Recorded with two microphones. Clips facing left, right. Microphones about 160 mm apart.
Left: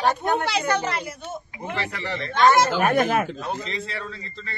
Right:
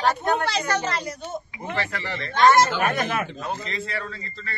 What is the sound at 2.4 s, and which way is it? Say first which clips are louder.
Speech: right 1 dB; centre (ahead or behind).